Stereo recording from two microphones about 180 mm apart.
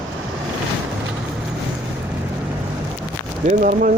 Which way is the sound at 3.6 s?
50° right (ahead or behind).